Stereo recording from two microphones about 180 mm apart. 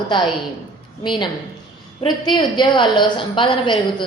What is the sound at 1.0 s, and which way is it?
A woman's voice, 25° left (ahead or behind).